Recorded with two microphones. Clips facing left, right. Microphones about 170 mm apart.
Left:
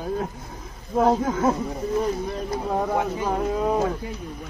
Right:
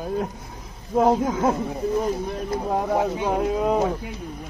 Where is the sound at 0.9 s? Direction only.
15° right (ahead or behind).